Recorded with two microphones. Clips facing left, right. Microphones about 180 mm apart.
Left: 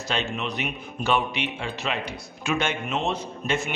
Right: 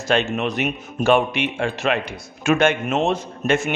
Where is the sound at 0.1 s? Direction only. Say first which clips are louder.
Right 8 dB; 55° right (ahead or behind).